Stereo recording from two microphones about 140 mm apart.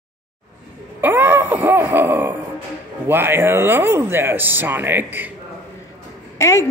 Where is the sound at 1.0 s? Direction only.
15° right (ahead or behind).